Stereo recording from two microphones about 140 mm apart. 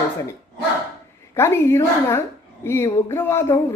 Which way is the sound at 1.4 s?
20° left (ahead or behind).